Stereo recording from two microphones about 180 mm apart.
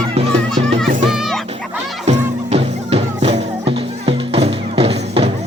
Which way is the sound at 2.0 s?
35° right (ahead or behind).